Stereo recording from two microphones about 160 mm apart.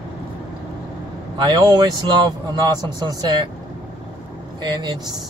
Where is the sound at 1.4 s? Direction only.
25° right (ahead or behind).